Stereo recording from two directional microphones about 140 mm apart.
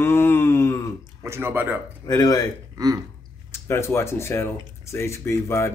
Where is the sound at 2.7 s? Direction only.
25° right (ahead or behind).